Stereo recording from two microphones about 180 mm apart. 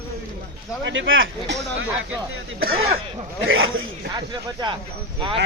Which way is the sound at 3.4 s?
90° right.